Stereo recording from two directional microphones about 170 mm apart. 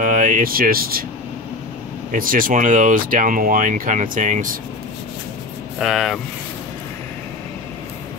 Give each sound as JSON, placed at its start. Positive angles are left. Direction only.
{"t": 0.0, "sound": "speech", "side_deg": -50}
{"t": 2.1, "sound": "speech", "side_deg": -55}
{"t": 5.8, "sound": "speech", "side_deg": 0}